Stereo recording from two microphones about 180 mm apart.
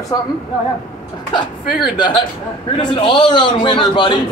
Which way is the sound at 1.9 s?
25° left (ahead or behind).